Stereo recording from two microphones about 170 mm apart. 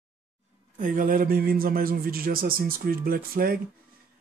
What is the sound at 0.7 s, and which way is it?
Speech, 50° right (ahead or behind).